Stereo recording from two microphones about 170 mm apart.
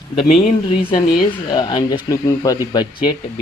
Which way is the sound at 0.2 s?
35° left (ahead or behind).